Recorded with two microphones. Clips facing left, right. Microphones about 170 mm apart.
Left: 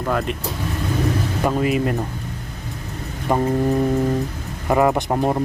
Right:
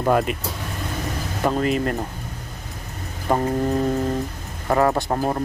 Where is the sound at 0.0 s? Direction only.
25° right (ahead or behind).